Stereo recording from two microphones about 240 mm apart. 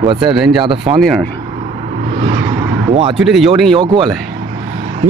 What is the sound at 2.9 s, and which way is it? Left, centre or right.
Speech, right.